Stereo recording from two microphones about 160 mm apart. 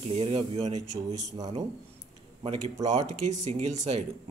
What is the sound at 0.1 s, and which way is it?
Speech, 35° right (ahead or behind).